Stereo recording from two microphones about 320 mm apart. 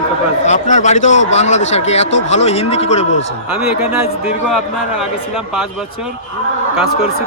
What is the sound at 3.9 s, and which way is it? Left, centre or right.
A man's voice, centre.